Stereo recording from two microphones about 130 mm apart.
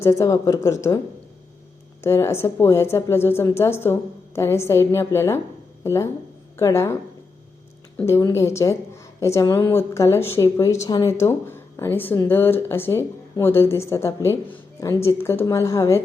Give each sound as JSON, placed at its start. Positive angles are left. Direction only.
{"t": 0.0, "sound": "a woman's voice", "side_deg": 25}
{"t": 7.9, "sound": "a woman's voice", "side_deg": 20}